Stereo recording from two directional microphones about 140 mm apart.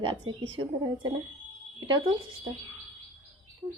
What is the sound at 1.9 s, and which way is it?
Speech, 35° right (ahead or behind).